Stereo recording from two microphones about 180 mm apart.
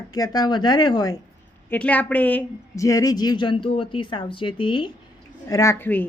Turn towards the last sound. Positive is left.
turn(degrees=10)  # may be behind; listen again after turning